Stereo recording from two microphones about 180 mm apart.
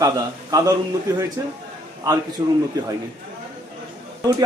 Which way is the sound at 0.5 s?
20° right (ahead or behind).